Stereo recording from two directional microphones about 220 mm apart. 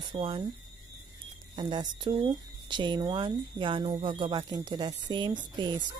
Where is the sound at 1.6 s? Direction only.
20° right (ahead or behind).